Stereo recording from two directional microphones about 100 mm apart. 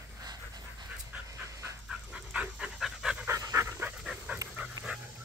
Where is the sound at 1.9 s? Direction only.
10° right (ahead or behind).